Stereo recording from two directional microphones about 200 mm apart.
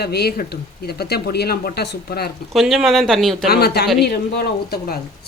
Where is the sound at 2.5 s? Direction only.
Centre (ahead or behind).